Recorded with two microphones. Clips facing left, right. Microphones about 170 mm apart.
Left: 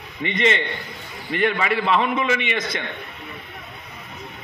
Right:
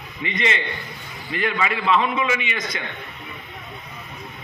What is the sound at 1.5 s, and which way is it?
A man's voice, 40° left (ahead or behind).